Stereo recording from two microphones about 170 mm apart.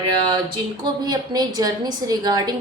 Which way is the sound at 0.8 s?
25° right (ahead or behind).